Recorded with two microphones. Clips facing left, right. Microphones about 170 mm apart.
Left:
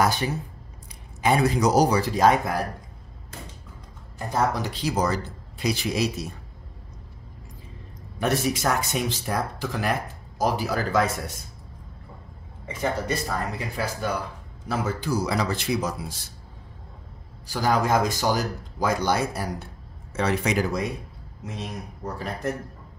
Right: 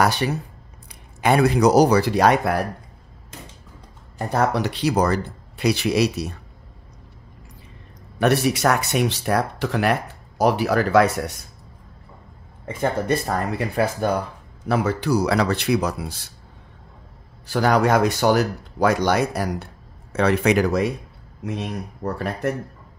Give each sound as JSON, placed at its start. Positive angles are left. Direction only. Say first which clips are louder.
{"t": 0.0, "sound": "speech", "louder": "right 3 dB", "side_deg": -70}
{"t": 4.2, "sound": "speech", "louder": "right 4 dB", "side_deg": -65}
{"t": 8.2, "sound": "speech", "louder": "right 6 dB", "side_deg": -70}
{"t": 12.6, "sound": "speech", "louder": "right 5 dB", "side_deg": -55}
{"t": 17.5, "sound": "speech", "louder": "right 5 dB", "side_deg": -65}